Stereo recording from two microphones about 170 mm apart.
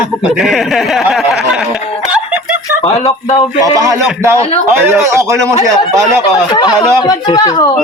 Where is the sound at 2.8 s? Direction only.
40° left (ahead or behind).